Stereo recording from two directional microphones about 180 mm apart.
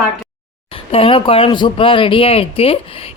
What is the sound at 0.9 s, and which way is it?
A man's voice, 30° left (ahead or behind).